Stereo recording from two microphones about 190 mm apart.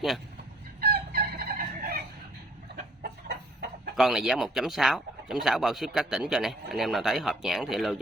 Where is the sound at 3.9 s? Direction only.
Centre (ahead or behind).